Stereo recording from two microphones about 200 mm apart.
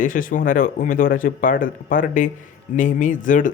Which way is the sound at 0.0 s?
40° left (ahead or behind).